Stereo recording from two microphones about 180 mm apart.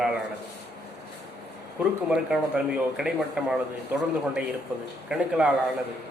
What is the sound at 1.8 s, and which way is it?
A man's voice, 5° right (ahead or behind).